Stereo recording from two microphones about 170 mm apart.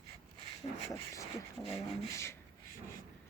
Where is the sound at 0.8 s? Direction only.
20° left (ahead or behind).